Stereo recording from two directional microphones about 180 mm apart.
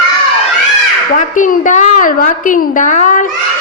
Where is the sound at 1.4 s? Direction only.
45° left (ahead or behind).